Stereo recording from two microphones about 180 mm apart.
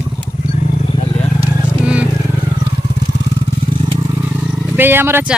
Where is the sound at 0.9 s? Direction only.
30° left (ahead or behind).